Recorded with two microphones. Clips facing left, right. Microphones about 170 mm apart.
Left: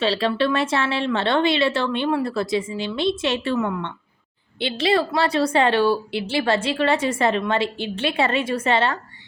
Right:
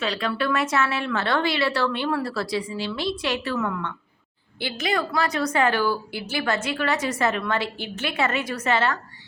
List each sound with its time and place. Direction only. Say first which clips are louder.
0.0 s a woman's voice: left 5 dB; 30° left (ahead or behind)
4.6 s a woman's voice: left 6 dB; 30° left (ahead or behind)